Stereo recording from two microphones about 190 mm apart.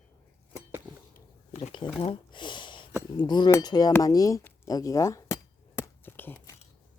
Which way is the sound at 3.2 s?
25° left (ahead or behind).